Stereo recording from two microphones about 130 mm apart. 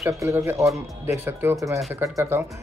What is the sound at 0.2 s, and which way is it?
Speech, 20° right (ahead or behind).